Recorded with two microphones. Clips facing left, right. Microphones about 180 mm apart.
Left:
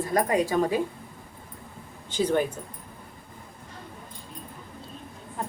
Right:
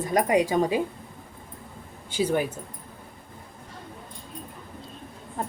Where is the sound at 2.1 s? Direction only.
10° right (ahead or behind).